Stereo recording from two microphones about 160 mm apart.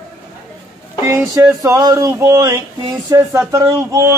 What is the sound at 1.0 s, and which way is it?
Music, 20° right (ahead or behind).